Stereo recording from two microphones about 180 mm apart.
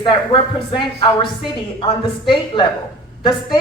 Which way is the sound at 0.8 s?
25° left (ahead or behind).